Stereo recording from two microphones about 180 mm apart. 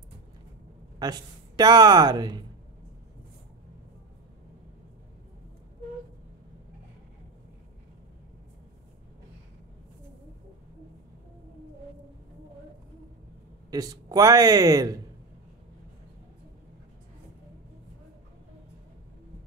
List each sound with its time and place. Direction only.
0.9 s speech: 20° right (ahead or behind)
13.7 s speech: 20° right (ahead or behind)